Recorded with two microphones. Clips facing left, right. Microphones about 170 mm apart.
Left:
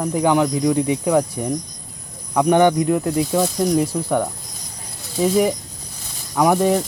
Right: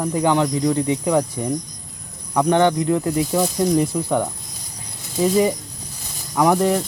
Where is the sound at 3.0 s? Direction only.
Centre (ahead or behind).